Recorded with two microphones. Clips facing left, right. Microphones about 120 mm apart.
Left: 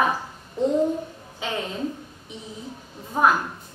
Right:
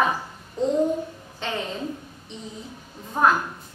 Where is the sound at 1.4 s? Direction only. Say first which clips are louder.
Even; 5° left (ahead or behind).